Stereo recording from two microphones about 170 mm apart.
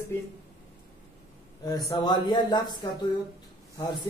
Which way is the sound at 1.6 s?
20° left (ahead or behind).